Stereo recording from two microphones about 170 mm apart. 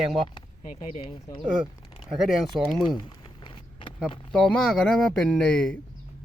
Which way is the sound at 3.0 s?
30° left (ahead or behind).